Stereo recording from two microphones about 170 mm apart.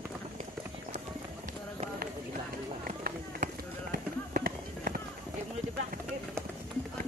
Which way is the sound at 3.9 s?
55° right (ahead or behind).